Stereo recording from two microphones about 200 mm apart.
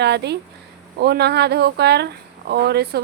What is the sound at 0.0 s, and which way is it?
Speech, 55° right (ahead or behind).